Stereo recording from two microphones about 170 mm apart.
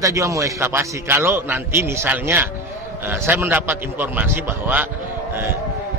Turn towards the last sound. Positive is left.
turn(degrees=-10)  # may be behind; listen again after turning